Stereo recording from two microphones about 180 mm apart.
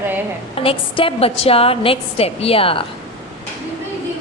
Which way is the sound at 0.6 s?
30° left (ahead or behind).